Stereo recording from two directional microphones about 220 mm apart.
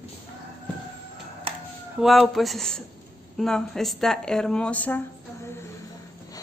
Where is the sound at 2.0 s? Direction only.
Centre (ahead or behind).